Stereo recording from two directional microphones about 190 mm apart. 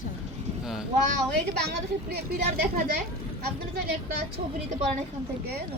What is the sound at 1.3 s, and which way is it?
A woman's voice, 55° right (ahead or behind).